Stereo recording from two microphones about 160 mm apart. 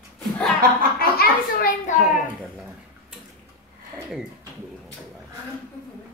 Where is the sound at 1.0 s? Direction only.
75° left (ahead or behind).